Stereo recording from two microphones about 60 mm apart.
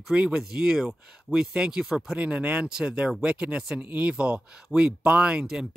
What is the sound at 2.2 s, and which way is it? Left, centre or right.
Speech, right.